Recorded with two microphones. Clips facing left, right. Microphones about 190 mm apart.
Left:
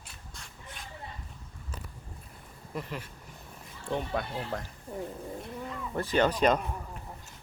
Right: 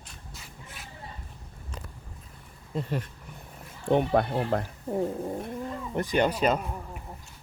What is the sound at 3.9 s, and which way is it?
Speech, 60° right (ahead or behind).